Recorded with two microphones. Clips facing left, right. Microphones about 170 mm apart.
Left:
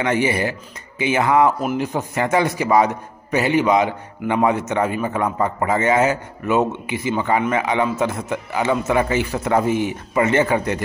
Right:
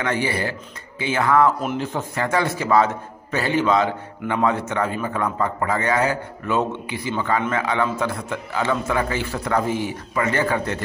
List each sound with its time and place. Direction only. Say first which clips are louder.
0.0 s speech: left 4 dB; 20° left (ahead or behind)
1.6 s speech: left 3 dB; 5° left (ahead or behind)
1.9 s a man's voice: left 3 dB; 20° left (ahead or behind)